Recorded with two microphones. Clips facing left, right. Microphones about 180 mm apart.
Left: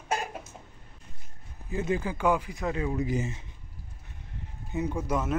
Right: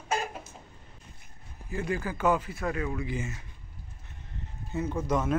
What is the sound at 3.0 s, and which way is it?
Speech, 40° left (ahead or behind).